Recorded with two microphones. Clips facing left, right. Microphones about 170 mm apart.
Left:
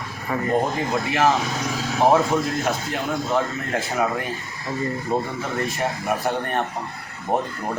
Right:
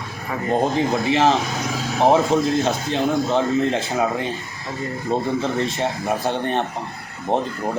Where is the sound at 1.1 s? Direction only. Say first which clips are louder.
Right 2 dB; 25° right (ahead or behind).